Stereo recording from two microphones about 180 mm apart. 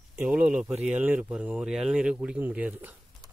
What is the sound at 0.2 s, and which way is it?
Speech, 5° right (ahead or behind).